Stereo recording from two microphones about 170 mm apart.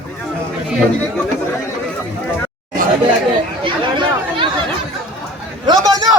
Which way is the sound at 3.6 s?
30° right (ahead or behind).